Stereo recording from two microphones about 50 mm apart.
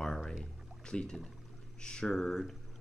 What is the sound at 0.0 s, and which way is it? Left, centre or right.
Pour, centre.